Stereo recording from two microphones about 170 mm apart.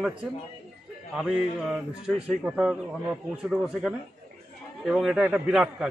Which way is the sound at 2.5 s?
5° right (ahead or behind).